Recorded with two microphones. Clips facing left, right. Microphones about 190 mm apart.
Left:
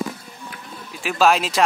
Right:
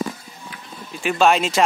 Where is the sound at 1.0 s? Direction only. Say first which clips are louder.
Right 1 dB; centre (ahead or behind).